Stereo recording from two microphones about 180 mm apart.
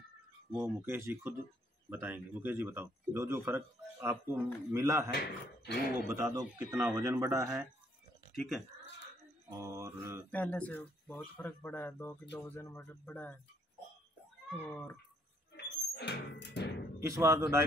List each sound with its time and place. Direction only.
0.5 s a man's voice: 15° right (ahead or behind)
5.1 s speech: 60° left (ahead or behind)
6.0 s a man's voice: 15° right (ahead or behind)
9.5 s a man's voice: 20° right (ahead or behind)
10.3 s speech: 10° left (ahead or behind)
14.6 s speech: 10° left (ahead or behind)
15.5 s music: 65° left (ahead or behind)
17.1 s a man's voice: 15° right (ahead or behind)